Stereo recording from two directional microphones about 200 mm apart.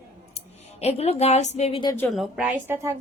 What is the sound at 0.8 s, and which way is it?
A woman's voice, 30° left (ahead or behind).